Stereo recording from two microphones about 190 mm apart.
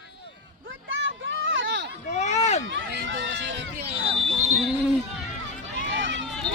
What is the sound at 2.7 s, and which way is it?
Run, 75° right (ahead or behind).